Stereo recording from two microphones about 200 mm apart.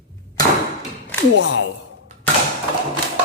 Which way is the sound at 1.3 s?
70° left (ahead or behind).